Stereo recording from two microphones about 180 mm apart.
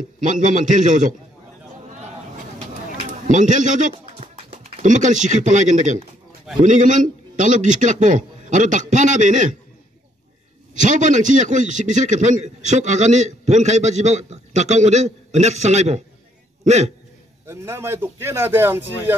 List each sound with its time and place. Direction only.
0.5 s a man's voice: 45° right (ahead or behind)
3.1 s a man's voice: 45° right (ahead or behind)
4.0 s a sound: 30° right (ahead or behind)
4.8 s a man's voice: 45° right (ahead or behind)
10.7 s a man's voice: 45° right (ahead or behind)
17.5 s a man's voice: 15° right (ahead or behind)